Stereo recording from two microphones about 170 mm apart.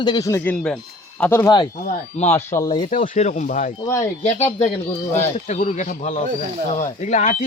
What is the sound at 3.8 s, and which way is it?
Speech, 15° left (ahead or behind).